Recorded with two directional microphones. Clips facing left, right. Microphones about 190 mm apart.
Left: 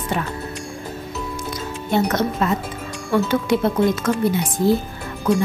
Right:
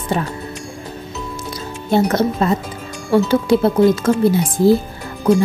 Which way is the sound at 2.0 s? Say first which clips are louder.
Right 4 dB; 35° right (ahead or behind).